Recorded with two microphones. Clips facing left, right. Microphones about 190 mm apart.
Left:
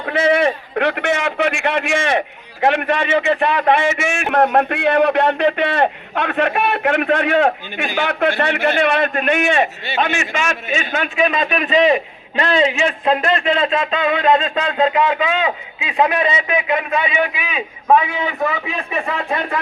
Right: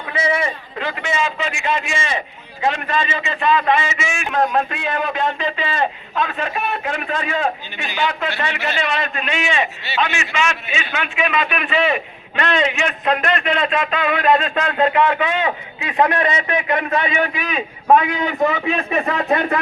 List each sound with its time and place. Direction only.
0.0 s a man's voice: 65° left (ahead or behind)
7.9 s a man's voice: 55° left (ahead or behind); by 18.3 s centre (ahead or behind)